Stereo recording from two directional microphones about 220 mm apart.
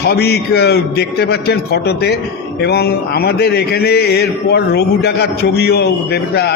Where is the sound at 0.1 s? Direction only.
45° left (ahead or behind).